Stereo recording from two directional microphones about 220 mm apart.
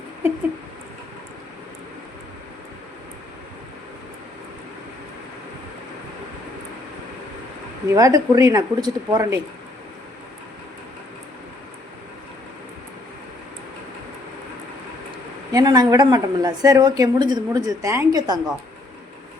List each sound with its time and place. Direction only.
7.9 s a woman's voice: 15° right (ahead or behind)
15.5 s a woman's voice: 15° right (ahead or behind)